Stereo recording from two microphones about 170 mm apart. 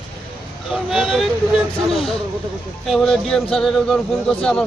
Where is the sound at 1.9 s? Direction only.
35° left (ahead or behind).